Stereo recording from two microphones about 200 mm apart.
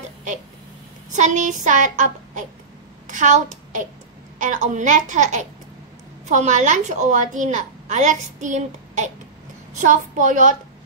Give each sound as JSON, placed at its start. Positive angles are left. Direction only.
{"t": 1.1, "sound": "a woman's voice", "side_deg": -40}